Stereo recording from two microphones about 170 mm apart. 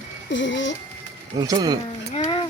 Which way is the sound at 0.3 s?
90° left.